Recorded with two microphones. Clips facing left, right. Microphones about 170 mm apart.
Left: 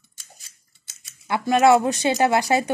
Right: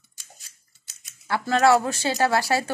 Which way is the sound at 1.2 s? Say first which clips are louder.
Left 3 dB; 15° left (ahead or behind).